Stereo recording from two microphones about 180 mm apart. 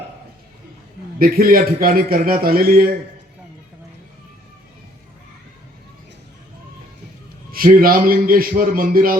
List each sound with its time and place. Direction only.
1.2 s a man's voice: 55° right (ahead or behind)
7.5 s a man's voice: 50° right (ahead or behind)